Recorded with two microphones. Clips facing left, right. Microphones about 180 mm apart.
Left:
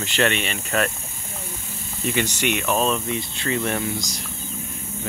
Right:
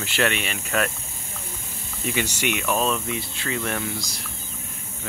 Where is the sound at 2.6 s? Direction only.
25° left (ahead or behind).